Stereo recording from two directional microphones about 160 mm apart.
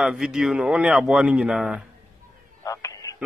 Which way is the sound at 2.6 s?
20° left (ahead or behind).